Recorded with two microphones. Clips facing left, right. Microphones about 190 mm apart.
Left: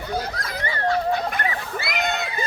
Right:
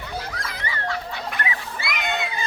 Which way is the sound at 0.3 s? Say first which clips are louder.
Left 3 dB; 40° left (ahead or behind).